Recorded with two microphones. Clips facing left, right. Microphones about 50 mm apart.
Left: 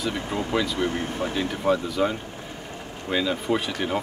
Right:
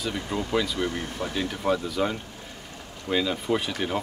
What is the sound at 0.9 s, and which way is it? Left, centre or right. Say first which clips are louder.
Speech: left 4 dB; left.